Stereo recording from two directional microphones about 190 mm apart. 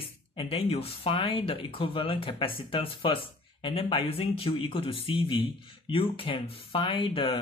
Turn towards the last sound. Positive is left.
turn(degrees=30)  # may be behind; listen again after turning